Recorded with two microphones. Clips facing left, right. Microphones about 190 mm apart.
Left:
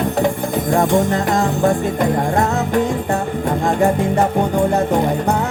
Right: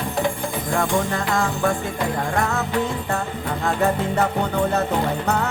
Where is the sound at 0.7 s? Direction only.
20° left (ahead or behind).